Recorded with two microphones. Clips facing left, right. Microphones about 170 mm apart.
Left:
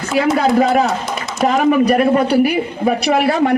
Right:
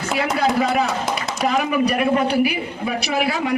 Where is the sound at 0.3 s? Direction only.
50° left (ahead or behind).